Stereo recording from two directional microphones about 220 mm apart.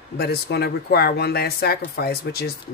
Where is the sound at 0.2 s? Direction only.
45° left (ahead or behind).